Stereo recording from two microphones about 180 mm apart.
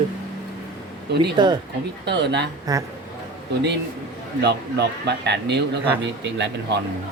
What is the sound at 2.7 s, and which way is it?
Speech, 20° right (ahead or behind).